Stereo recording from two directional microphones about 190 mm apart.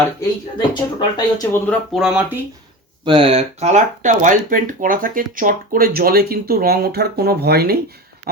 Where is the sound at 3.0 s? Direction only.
25° right (ahead or behind).